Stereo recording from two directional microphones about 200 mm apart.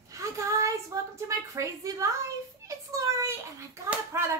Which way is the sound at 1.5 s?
15° right (ahead or behind).